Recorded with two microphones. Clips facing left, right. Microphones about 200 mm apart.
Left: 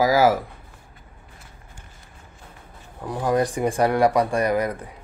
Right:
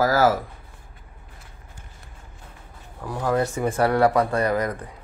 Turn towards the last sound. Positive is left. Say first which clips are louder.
# left 1 dB
turn(degrees=10)  # may be behind; listen again after turning